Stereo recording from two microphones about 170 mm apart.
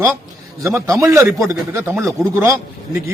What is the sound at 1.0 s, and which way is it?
A man's voice, 15° right (ahead or behind).